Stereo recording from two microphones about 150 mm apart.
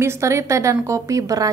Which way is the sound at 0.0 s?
20° right (ahead or behind).